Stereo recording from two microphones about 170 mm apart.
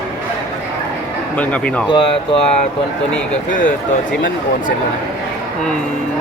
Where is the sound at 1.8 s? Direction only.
30° left (ahead or behind).